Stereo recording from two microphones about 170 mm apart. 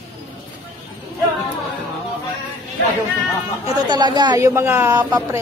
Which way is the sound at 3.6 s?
25° right (ahead or behind).